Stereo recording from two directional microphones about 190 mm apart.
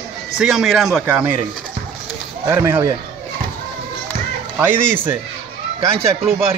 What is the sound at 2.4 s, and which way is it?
Speech, 10° right (ahead or behind).